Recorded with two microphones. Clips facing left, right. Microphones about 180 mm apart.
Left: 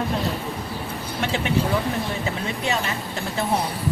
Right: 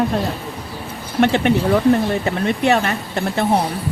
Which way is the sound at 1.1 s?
65° right (ahead or behind).